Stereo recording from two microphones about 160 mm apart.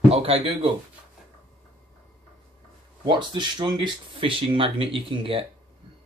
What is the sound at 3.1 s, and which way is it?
Speech, 30° right (ahead or behind).